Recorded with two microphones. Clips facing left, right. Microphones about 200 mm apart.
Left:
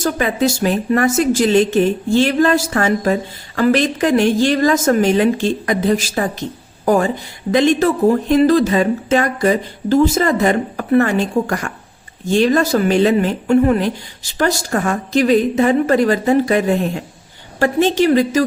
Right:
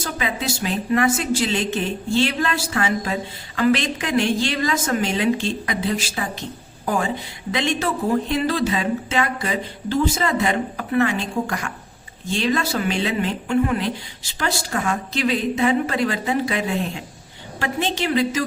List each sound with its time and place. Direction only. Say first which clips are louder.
0.0 s a woman's voice: left 9 dB; 50° left (ahead or behind)